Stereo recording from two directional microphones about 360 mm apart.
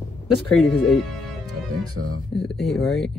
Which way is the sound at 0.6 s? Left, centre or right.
Centre.